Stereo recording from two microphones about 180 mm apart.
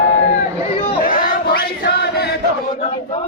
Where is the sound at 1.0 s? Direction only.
50° left (ahead or behind).